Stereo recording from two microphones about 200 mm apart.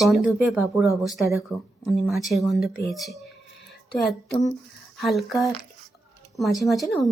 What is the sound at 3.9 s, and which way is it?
Speech, 55° left (ahead or behind).